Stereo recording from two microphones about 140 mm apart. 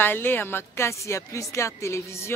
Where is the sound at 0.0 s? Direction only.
15° left (ahead or behind).